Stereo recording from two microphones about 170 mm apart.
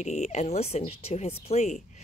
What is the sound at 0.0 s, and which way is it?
Speech, 40° left (ahead or behind).